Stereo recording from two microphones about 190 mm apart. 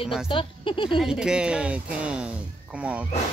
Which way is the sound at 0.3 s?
25° left (ahead or behind).